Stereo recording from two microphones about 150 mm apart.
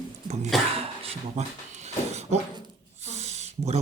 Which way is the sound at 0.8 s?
45° right (ahead or behind).